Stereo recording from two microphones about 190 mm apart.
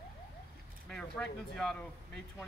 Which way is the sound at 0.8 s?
5° left (ahead or behind).